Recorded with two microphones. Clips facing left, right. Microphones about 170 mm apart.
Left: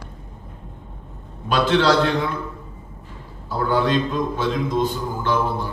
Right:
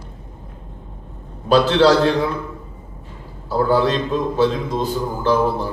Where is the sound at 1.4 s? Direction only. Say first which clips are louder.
Right 4 dB; 35° right (ahead or behind).